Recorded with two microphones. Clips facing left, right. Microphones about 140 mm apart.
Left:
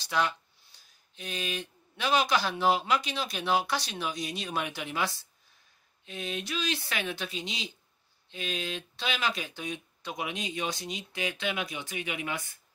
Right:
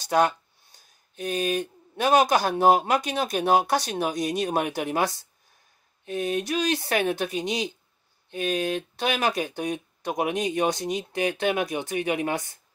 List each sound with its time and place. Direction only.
0.0 s speech: 45° right (ahead or behind)